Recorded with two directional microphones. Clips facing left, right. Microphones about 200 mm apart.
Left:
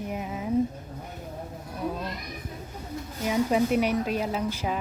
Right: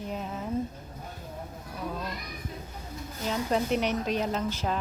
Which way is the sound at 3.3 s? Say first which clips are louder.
Left 4 dB; 5° left (ahead or behind).